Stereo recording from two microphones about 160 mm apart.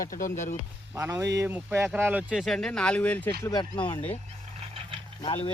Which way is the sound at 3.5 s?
25° left (ahead or behind).